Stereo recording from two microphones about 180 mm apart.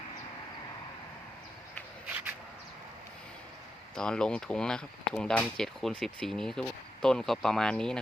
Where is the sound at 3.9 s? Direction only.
5° left (ahead or behind).